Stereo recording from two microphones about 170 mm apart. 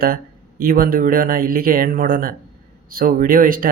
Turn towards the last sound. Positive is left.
turn(degrees=-55)  # may be behind; listen again after turning